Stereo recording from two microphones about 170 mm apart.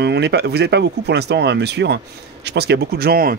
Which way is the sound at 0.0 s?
75° right (ahead or behind).